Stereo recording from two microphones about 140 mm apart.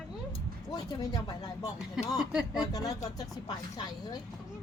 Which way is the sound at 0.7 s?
30° left (ahead or behind).